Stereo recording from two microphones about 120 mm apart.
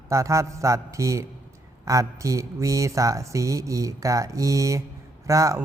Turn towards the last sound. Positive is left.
turn(degrees=-30)  # may be behind; listen again after turning